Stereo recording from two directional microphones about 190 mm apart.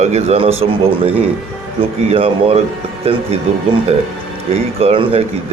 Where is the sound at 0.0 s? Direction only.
35° right (ahead or behind).